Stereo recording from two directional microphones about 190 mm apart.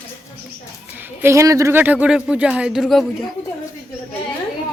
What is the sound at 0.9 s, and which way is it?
Speech, 10° right (ahead or behind).